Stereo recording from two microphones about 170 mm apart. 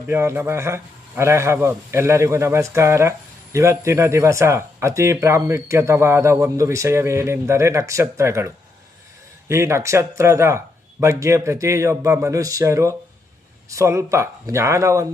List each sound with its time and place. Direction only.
0.1 s a man's voice: 15° right (ahead or behind)